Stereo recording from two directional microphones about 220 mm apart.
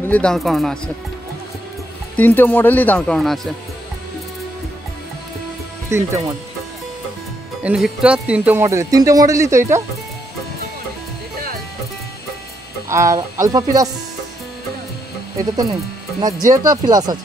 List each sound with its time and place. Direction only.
0.0 s speech: 5° left (ahead or behind)
2.1 s speech: 10° left (ahead or behind)
5.9 s speech: 15° right (ahead or behind)
7.6 s speech: 5° right (ahead or behind)
12.8 s speech: 15° right (ahead or behind)
15.3 s speech: 15° right (ahead or behind)